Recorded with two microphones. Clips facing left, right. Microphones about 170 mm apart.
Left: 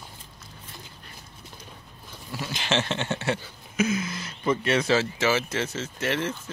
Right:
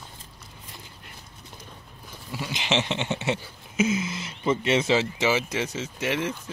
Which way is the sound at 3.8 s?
25° right (ahead or behind).